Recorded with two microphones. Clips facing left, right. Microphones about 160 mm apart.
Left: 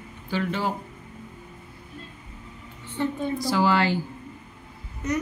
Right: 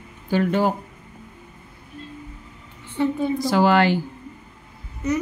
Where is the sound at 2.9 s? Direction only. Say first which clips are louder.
Right 5 dB; 10° right (ahead or behind).